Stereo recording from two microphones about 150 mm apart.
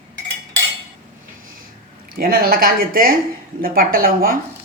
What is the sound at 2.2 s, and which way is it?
Speech, 80° right.